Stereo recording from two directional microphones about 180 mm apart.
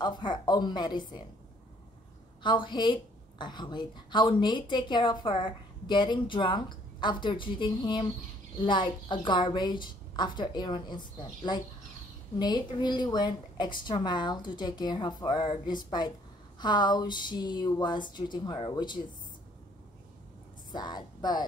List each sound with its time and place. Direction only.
0.0 s a woman's voice: 25° left (ahead or behind)
2.4 s a woman's voice: 25° left (ahead or behind)
20.7 s a woman's voice: 25° left (ahead or behind)